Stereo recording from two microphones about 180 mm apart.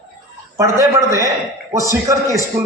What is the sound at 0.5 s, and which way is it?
A man's voice, 15° right (ahead or behind).